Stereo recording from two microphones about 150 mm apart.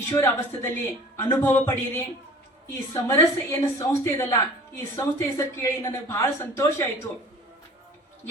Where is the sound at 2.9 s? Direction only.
20° left (ahead or behind).